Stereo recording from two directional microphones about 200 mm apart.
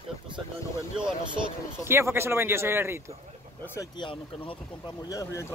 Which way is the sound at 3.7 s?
25° left (ahead or behind).